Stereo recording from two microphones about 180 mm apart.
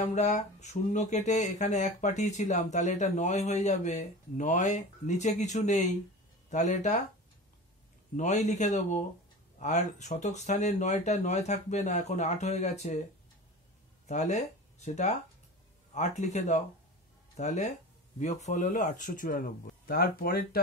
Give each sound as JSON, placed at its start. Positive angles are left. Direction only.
{"t": 0.1, "sound": "speech", "side_deg": 40}
{"t": 8.2, "sound": "speech", "side_deg": 40}
{"t": 14.0, "sound": "speech", "side_deg": 40}